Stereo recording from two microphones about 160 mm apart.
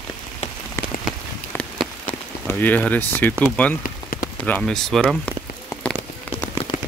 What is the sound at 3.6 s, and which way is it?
Speech, 5° left (ahead or behind).